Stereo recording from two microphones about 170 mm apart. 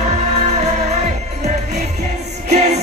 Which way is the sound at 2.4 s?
40° right (ahead or behind).